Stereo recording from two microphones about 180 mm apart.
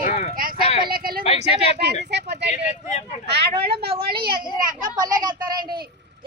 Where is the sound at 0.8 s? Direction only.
55° right (ahead or behind).